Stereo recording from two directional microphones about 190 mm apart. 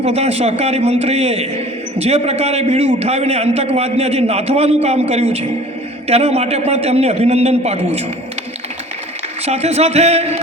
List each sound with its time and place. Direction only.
0.0 s a man's voice: 35° right (ahead or behind)
9.5 s a man's voice: 35° right (ahead or behind)